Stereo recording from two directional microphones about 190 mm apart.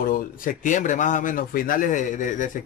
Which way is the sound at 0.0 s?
45° left (ahead or behind).